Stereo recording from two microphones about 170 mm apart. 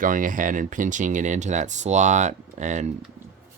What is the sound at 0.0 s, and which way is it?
Speech, 50° right (ahead or behind).